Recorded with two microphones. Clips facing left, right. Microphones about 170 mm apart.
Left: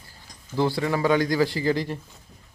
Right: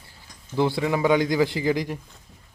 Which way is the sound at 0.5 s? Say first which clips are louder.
Right 1 dB; 20° right (ahead or behind).